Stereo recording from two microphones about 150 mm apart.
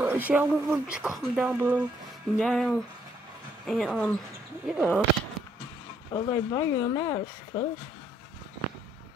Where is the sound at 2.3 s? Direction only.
Centre (ahead or behind).